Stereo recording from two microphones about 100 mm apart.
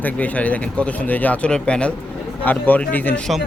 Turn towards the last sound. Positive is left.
turn(degrees=15)  # may be behind; listen again after turning